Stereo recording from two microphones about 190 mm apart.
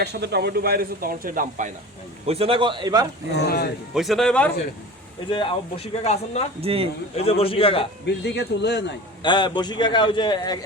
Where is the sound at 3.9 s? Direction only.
Centre (ahead or behind).